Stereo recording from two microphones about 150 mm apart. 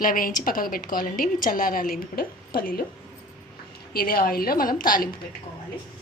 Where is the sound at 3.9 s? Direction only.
75° left (ahead or behind).